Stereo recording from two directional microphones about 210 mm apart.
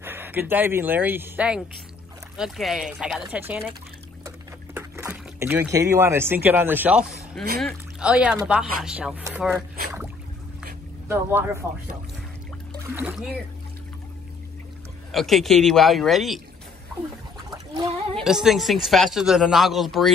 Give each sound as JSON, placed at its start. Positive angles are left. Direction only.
{"t": 0.0, "sound": "speech", "side_deg": -10}
{"t": 4.7, "sound": "speech", "side_deg": -10}
{"t": 11.1, "sound": "speech", "side_deg": -10}
{"t": 12.9, "sound": "speech", "side_deg": -5}
{"t": 15.0, "sound": "speech", "side_deg": 0}
{"t": 18.1, "sound": "speech", "side_deg": 0}